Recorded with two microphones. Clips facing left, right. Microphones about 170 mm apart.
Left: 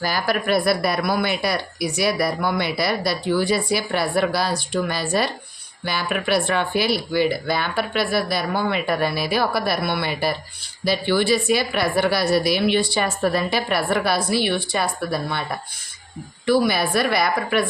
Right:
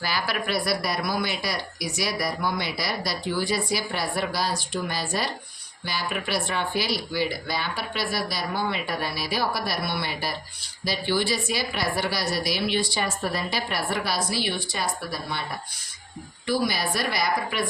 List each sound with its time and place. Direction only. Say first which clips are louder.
0.0 s speech: left 6 dB; 45° left (ahead or behind)
16.5 s speech: left 7 dB; 60° left (ahead or behind)